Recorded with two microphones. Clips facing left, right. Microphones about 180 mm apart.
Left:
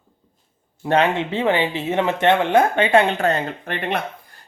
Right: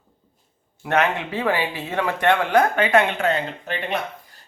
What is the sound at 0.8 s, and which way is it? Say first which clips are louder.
Speech: left 3 dB; 30° left (ahead or behind).